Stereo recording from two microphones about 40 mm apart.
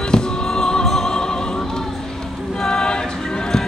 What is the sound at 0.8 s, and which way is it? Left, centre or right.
Opera, centre.